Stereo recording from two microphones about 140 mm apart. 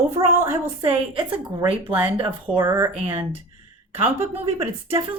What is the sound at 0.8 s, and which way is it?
Speech, 40° right (ahead or behind).